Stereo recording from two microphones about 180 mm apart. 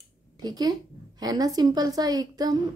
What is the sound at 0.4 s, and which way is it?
A woman's voice, 20° right (ahead or behind).